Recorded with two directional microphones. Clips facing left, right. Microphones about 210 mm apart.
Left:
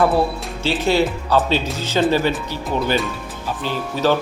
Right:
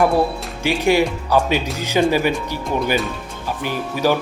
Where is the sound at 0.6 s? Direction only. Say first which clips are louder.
Right 1 dB; 15° right (ahead or behind).